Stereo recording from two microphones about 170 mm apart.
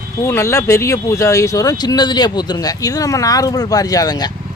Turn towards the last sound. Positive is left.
turn(degrees=25)  # may be behind; listen again after turning